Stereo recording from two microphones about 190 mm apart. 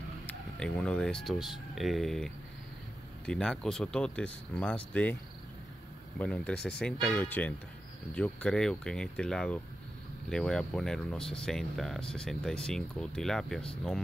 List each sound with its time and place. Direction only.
0.3 s speech: 5° left (ahead or behind)
6.1 s speech: 5° left (ahead or behind)